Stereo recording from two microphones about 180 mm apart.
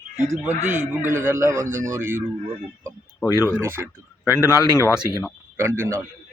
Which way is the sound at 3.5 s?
15° right (ahead or behind).